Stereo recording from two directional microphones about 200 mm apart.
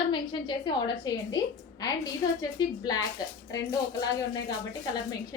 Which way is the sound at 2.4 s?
20° left (ahead or behind).